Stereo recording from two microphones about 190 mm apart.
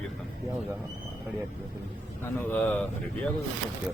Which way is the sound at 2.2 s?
10° left (ahead or behind).